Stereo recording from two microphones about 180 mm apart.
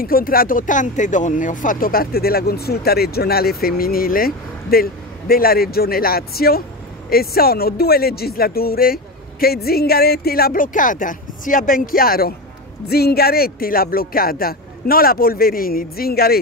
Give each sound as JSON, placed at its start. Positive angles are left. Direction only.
{"t": 0.0, "sound": "speech", "side_deg": 55}